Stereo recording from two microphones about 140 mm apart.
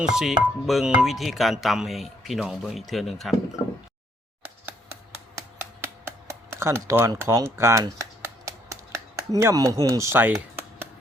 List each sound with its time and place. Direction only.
0.1 s speech: 5° right (ahead or behind)
5.8 s a sound: 20° right (ahead or behind)
9.3 s speech: 25° right (ahead or behind)